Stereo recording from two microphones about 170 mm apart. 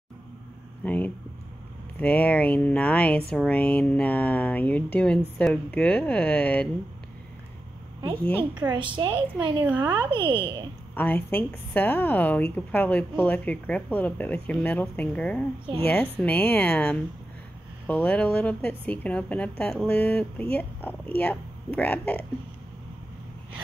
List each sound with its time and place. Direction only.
0.8 s speech: 10° left (ahead or behind)
8.5 s a woman's voice: 25° right (ahead or behind)
11.0 s speech: 10° left (ahead or behind)